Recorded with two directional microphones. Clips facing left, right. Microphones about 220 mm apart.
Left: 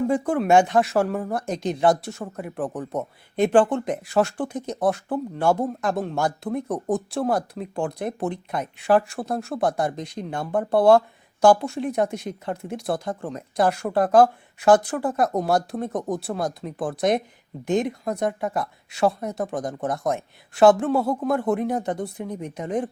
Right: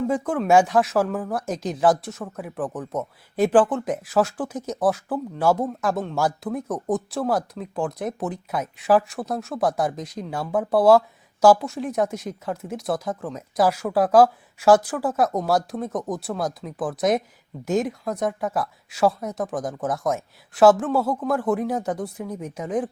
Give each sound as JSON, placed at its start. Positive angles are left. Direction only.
{"t": 0.1, "sound": "speech", "side_deg": 0}
{"t": 16.0, "sound": "speech", "side_deg": 25}
{"t": 16.2, "sound": "speech", "side_deg": 0}